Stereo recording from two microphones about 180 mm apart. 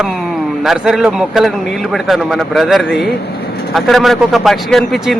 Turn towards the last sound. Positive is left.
turn(degrees=0)  # may be behind; listen again after turning